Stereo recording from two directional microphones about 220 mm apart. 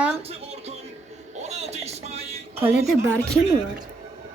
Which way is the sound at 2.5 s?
5° right (ahead or behind).